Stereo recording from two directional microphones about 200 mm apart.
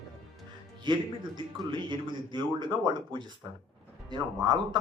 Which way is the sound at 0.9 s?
20° right (ahead or behind).